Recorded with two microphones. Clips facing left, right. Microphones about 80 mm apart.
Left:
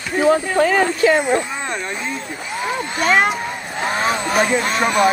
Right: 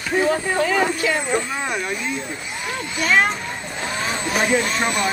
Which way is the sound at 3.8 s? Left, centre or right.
Left.